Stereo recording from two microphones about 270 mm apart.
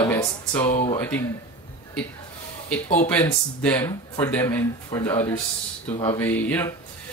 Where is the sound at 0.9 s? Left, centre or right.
Centre.